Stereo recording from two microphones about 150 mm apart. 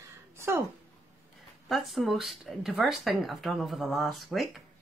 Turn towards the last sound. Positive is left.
turn(degrees=0)  # may be behind; listen again after turning